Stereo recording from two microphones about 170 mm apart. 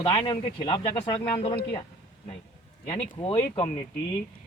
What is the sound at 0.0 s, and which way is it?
Speech, 30° left (ahead or behind).